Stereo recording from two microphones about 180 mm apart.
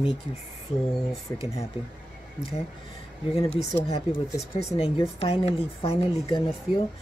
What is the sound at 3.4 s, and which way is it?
Speech, 35° left (ahead or behind).